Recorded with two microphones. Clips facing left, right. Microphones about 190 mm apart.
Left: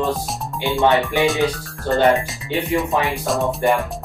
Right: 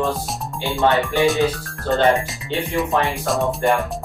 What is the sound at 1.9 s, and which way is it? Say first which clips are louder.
Speech: left 1 dB; centre (ahead or behind).